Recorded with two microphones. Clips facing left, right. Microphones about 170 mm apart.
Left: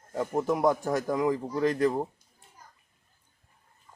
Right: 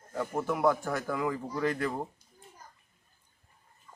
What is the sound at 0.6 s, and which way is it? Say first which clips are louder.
Speech: left 3 dB; 20° left (ahead or behind).